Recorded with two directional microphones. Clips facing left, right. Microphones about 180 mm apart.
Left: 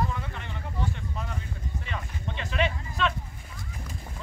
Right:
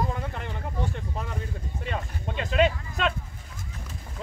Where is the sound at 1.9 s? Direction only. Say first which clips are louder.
Right 5 dB; 45° right (ahead or behind).